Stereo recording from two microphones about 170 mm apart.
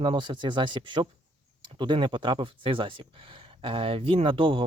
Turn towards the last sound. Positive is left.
turn(degrees=-30)  # may be behind; listen again after turning